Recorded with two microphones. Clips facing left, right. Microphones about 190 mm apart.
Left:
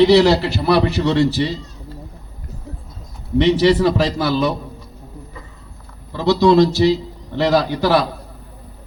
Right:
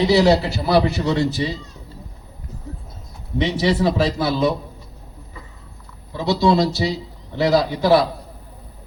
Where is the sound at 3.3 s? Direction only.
75° left (ahead or behind).